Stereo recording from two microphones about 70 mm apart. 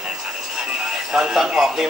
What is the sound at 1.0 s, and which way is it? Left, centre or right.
Speech, centre.